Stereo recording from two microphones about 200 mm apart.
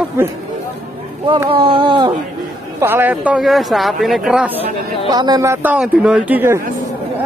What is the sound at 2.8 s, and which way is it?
Speech, 10° right (ahead or behind).